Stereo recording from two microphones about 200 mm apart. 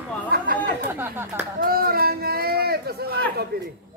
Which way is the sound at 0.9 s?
10° right (ahead or behind).